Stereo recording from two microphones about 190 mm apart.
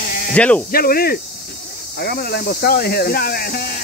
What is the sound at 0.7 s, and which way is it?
Speech, 50° left (ahead or behind).